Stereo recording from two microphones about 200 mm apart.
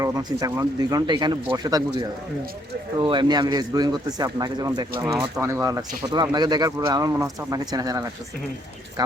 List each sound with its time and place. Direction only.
0.0 s speech: 20° right (ahead or behind)